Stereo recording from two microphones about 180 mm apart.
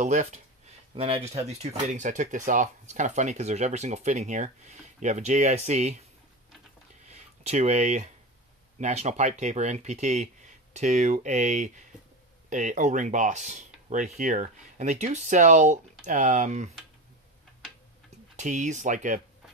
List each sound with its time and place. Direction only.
0.0 s speech: 40° right (ahead or behind)
7.1 s speech: 40° right (ahead or behind)
18.3 s speech: 45° right (ahead or behind)